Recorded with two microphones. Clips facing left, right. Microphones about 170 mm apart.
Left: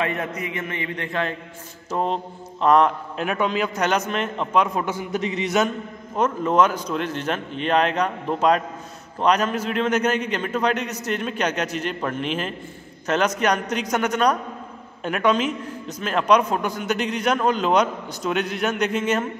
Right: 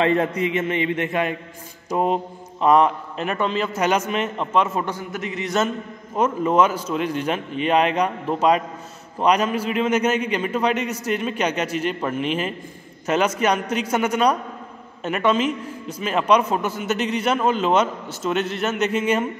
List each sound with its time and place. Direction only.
0.0 s a man's voice: 30° right (ahead or behind)
1.9 s a man's voice: 5° right (ahead or behind)
4.9 s a man's voice: 20° left (ahead or behind)
6.1 s a man's voice: 5° right (ahead or behind)